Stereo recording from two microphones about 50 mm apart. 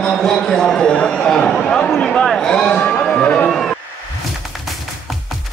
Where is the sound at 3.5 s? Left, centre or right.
Centre.